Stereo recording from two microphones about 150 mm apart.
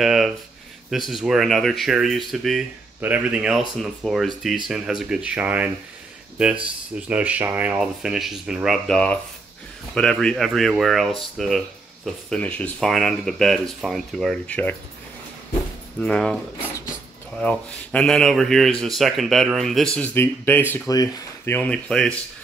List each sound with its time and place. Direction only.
0.0 s speech: centre (ahead or behind)
16.0 s speech: 5° left (ahead or behind)
17.4 s speech: 5° left (ahead or behind); by 21.2 s 25° left (ahead or behind)
21.5 s speech: 10° left (ahead or behind)